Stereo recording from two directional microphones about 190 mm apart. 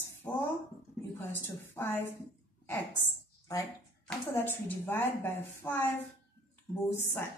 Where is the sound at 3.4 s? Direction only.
20° left (ahead or behind).